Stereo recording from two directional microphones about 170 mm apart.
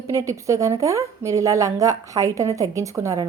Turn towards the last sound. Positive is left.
turn(degrees=-20)  # may be behind; listen again after turning